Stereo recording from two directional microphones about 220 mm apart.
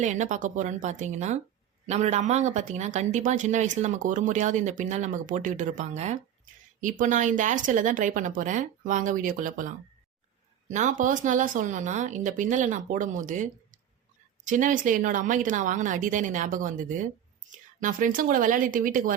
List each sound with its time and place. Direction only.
0.0 s speech: 35° right (ahead or behind)